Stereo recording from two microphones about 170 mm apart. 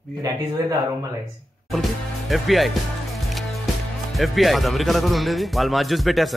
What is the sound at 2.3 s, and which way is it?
Music, centre (ahead or behind).